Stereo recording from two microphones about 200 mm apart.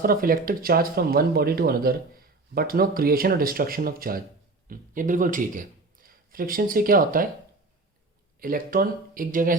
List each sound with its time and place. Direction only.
0.0 s speech: 45° right (ahead or behind)
8.4 s speech: 45° right (ahead or behind)